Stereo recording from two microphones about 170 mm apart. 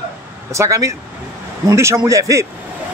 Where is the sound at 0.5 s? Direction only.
15° right (ahead or behind).